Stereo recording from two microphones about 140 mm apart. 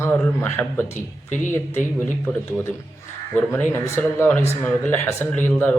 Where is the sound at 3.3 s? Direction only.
15° left (ahead or behind).